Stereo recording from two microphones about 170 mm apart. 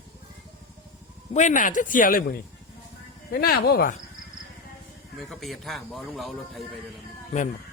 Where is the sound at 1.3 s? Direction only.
45° left (ahead or behind).